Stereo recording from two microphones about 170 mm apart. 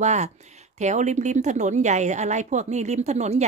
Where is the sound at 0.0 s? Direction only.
45° right (ahead or behind).